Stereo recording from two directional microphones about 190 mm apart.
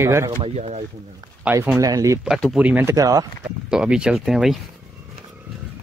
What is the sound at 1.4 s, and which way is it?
Speech, 10° right (ahead or behind).